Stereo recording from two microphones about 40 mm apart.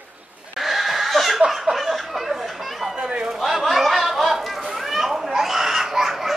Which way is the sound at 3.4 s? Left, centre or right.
Centre.